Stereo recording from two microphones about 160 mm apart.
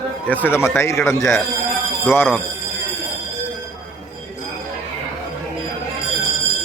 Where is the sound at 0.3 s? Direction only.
10° left (ahead or behind).